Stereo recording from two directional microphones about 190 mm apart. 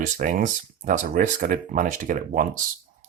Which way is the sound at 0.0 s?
45° right (ahead or behind).